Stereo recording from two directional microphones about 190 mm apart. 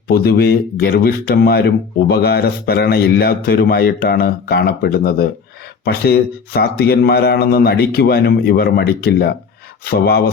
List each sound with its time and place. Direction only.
0.1 s speech: 55° left (ahead or behind)